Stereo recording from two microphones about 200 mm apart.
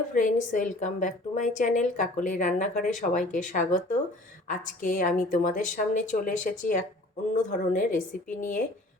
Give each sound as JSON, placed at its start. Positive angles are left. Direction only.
{"t": 0.1, "sound": "a woman's voice", "side_deg": 40}